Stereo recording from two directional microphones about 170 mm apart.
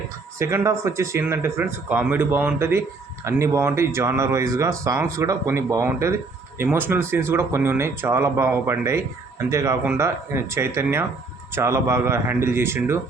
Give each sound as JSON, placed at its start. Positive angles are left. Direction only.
{"t": 0.3, "sound": "speech", "side_deg": -15}